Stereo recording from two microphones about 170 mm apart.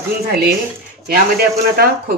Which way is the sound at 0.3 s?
70° right (ahead or behind).